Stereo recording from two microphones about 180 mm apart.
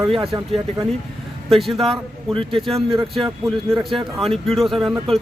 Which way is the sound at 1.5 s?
Centre (ahead or behind).